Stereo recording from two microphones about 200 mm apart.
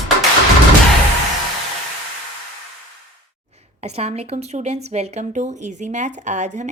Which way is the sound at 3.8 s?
30° right (ahead or behind).